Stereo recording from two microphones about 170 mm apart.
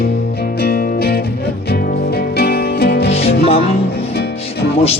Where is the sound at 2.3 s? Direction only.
65° left (ahead or behind).